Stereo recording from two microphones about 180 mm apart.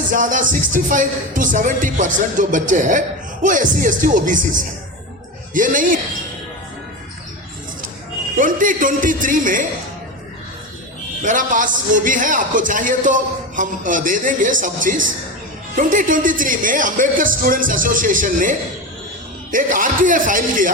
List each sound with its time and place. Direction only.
0.1 s speech: 45° right (ahead or behind)
8.4 s speech: 50° right (ahead or behind)
11.2 s speech: 45° right (ahead or behind)